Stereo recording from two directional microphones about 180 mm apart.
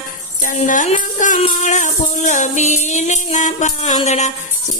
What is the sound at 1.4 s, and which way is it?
Music, 40° left (ahead or behind).